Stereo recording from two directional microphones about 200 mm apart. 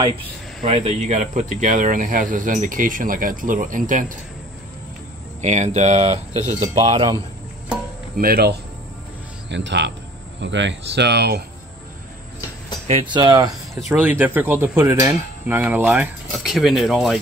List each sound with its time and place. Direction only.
0.7 s speech: 30° right (ahead or behind)
5.4 s speech: 35° right (ahead or behind)
8.2 s speech: 50° right (ahead or behind)
9.5 s speech: 60° right (ahead or behind)
12.8 s speech: 25° right (ahead or behind)
13.7 s speech: 5° right (ahead or behind)